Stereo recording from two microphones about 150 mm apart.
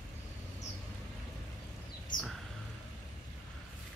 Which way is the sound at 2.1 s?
60° left (ahead or behind).